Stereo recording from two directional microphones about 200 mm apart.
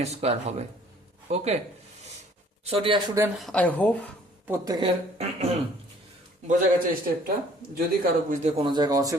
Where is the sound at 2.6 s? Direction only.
30° right (ahead or behind).